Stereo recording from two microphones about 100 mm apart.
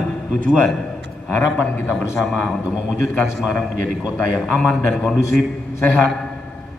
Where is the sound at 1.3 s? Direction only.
15° left (ahead or behind).